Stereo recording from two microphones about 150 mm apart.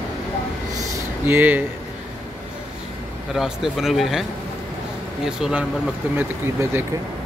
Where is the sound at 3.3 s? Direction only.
Centre (ahead or behind).